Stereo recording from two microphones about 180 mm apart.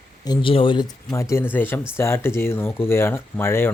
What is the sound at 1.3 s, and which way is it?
Speech, 10° left (ahead or behind).